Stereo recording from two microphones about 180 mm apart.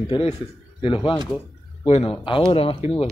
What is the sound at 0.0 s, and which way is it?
A man's voice, 30° left (ahead or behind).